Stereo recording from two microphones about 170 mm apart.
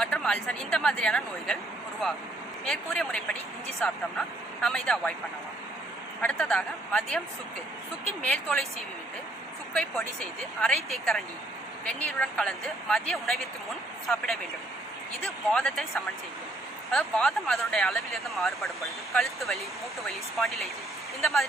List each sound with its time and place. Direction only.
0.0 s speech: 5° left (ahead or behind)
4.6 s speech: 5° left (ahead or behind)
6.2 s speech: 5° left (ahead or behind)
8.2 s speech: 5° left (ahead or behind)
10.6 s speech: 5° left (ahead or behind)
16.9 s speech: 5° left (ahead or behind)